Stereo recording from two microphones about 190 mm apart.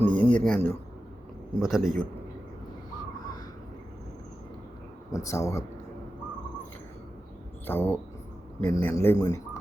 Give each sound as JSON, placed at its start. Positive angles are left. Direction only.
{"t": 0.0, "sound": "a sound", "side_deg": 10}
{"t": 1.5, "sound": "a man's voice", "side_deg": 0}
{"t": 5.1, "sound": "a man's voice", "side_deg": 15}
{"t": 7.7, "sound": "a man's voice", "side_deg": 10}